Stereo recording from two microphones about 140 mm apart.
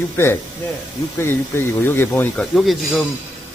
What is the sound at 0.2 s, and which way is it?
Speech, 20° left (ahead or behind).